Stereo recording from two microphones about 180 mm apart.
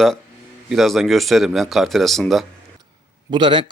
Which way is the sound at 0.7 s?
Centre (ahead or behind).